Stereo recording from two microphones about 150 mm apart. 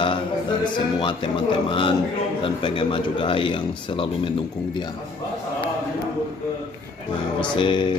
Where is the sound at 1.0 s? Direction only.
35° left (ahead or behind).